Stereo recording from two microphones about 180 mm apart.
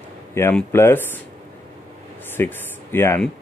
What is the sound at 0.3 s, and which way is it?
Speech, 10° left (ahead or behind).